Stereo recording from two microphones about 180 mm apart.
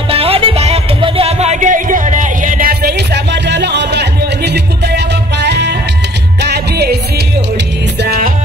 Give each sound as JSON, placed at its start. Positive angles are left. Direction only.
{"t": 0.1, "sound": "music", "side_deg": -30}
{"t": 8.0, "sound": "music", "side_deg": -60}